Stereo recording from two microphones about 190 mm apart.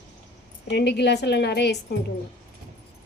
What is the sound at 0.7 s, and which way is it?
Speech, 60° left (ahead or behind).